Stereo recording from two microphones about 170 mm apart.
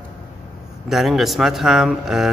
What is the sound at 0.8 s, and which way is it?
Speech, centre (ahead or behind).